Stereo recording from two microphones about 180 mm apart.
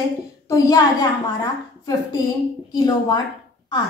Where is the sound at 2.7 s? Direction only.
20° left (ahead or behind).